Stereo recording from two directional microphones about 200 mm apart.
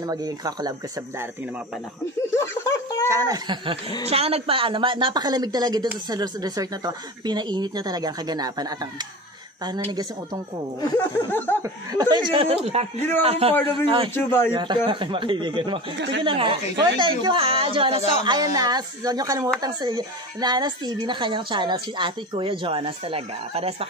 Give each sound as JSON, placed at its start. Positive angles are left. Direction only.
{"t": 0.0, "sound": "a woman's voice", "side_deg": -20}
{"t": 2.3, "sound": "snicker", "side_deg": 15}
{"t": 3.1, "sound": "a woman's voice", "side_deg": -20}
{"t": 9.8, "sound": "a woman's voice", "side_deg": -20}
{"t": 10.8, "sound": "a sound", "side_deg": 10}
{"t": 11.6, "sound": "a woman's voice", "side_deg": -20}
{"t": 14.1, "sound": "a sound", "side_deg": 10}
{"t": 14.5, "sound": "a woman's voice", "side_deg": -25}
{"t": 16.0, "sound": "speech", "side_deg": -60}
{"t": 16.3, "sound": "a woman's voice", "side_deg": -25}